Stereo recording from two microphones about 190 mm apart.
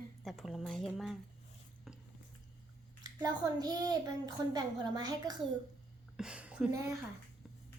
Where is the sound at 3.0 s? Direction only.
20° right (ahead or behind).